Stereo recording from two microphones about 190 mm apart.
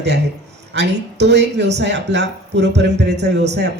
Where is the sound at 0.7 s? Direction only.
65° right (ahead or behind).